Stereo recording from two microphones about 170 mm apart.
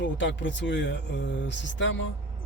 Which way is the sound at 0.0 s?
90° left.